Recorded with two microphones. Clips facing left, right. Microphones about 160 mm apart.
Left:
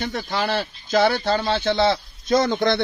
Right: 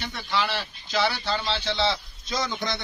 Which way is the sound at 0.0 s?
45° left (ahead or behind).